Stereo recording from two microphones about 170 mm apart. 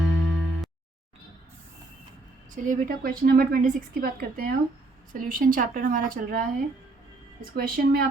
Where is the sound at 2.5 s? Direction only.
50° right (ahead or behind).